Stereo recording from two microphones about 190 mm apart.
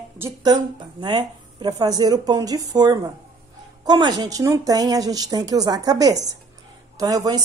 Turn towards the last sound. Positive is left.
turn(degrees=-20)  # may be behind; listen again after turning